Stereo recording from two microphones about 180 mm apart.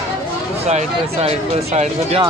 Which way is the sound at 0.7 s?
35° right (ahead or behind).